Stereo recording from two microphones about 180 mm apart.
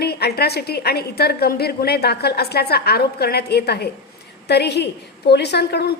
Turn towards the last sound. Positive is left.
turn(degrees=65)  # may be behind; listen again after turning